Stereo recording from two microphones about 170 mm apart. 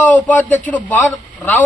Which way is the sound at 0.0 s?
10° left (ahead or behind).